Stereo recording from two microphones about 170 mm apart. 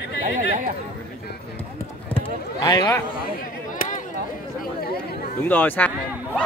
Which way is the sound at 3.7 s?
50° left (ahead or behind).